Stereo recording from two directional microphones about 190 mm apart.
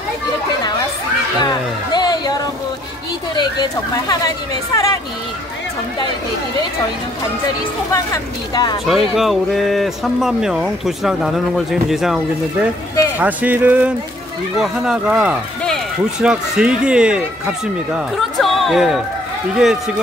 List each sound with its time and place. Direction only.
1.4 s music: 20° left (ahead or behind)
3.3 s speech: 20° left (ahead or behind)
7.9 s speech: 20° left (ahead or behind)
9.1 s speech: centre (ahead or behind)